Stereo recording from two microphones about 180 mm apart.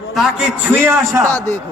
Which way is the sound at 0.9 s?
15° right (ahead or behind).